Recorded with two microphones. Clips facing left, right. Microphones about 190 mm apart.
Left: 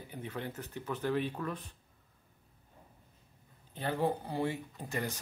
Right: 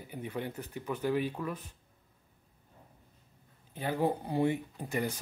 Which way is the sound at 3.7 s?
15° right (ahead or behind).